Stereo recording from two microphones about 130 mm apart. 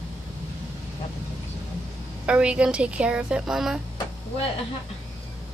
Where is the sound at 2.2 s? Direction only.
10° right (ahead or behind).